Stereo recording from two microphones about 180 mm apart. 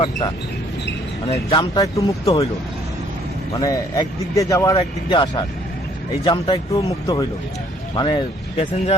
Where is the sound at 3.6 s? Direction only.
20° left (ahead or behind).